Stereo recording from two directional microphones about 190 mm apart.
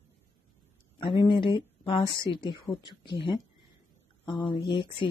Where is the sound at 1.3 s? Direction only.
25° left (ahead or behind).